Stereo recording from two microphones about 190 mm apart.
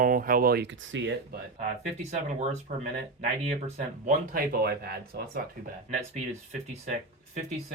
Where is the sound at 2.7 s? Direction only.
40° right (ahead or behind).